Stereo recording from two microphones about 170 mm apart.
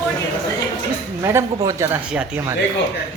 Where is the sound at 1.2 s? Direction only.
15° right (ahead or behind).